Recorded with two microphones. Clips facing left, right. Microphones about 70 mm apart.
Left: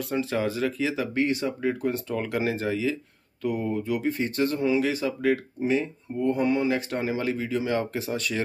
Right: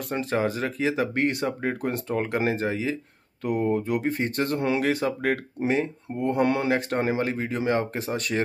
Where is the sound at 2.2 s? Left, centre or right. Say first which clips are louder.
Right 3 dB; right.